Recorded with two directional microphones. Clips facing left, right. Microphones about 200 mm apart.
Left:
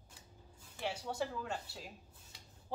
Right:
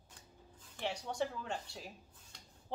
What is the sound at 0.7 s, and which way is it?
Speech, 5° left (ahead or behind).